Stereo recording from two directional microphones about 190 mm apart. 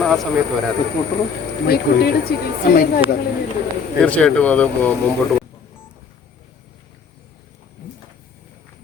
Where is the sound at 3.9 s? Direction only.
5° left (ahead or behind).